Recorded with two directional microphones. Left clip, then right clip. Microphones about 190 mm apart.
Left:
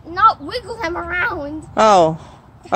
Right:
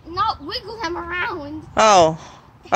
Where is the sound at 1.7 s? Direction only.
5° left (ahead or behind).